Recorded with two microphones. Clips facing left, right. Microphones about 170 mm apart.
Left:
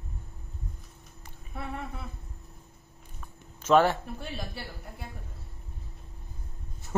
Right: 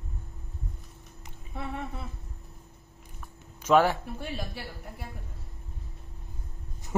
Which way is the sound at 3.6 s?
10° right (ahead or behind).